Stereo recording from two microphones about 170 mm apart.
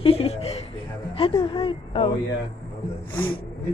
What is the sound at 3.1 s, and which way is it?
Speech, 30° left (ahead or behind).